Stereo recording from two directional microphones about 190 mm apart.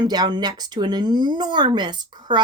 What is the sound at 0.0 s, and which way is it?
Speech, 20° right (ahead or behind).